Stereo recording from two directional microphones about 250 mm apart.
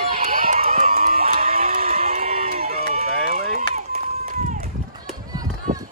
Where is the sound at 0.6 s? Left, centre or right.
Right.